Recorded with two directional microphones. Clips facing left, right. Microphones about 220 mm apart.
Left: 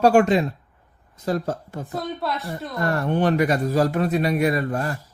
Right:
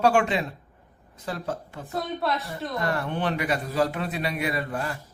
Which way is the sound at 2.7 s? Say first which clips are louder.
Left 6 dB; 45° left (ahead or behind).